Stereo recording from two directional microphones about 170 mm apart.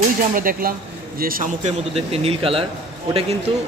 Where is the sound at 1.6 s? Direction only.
35° right (ahead or behind).